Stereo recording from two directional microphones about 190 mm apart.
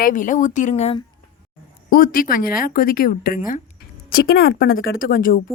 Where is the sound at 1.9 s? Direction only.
50° left (ahead or behind).